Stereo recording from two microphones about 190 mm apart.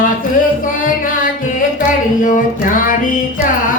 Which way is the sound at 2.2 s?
45° left (ahead or behind).